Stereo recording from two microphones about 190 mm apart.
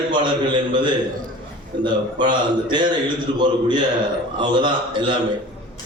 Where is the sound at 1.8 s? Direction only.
25° right (ahead or behind).